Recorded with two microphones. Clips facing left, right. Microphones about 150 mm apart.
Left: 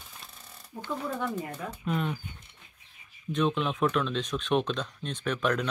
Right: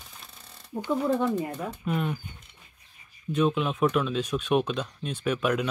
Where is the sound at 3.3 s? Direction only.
5° right (ahead or behind).